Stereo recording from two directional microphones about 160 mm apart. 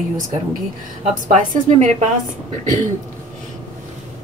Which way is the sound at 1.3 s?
50° right (ahead or behind).